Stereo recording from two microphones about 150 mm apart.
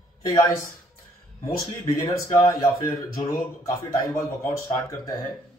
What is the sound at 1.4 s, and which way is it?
Speech, 20° left (ahead or behind).